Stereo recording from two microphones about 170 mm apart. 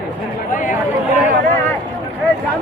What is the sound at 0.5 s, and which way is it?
Speech, 50° left (ahead or behind).